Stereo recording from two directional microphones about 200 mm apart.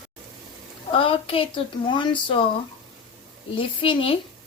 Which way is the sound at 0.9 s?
25° left (ahead or behind).